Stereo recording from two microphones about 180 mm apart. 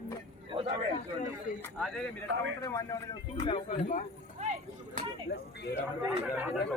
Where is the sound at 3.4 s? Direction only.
30° left (ahead or behind).